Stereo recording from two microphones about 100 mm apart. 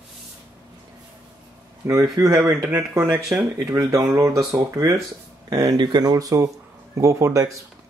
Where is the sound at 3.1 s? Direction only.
25° right (ahead or behind).